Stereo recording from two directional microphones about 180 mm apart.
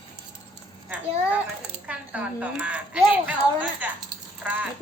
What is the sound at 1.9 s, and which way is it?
Speech, 10° right (ahead or behind).